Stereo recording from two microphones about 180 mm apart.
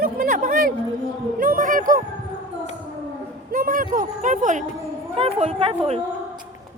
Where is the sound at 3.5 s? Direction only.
50° right (ahead or behind); by 6.0 s 30° right (ahead or behind).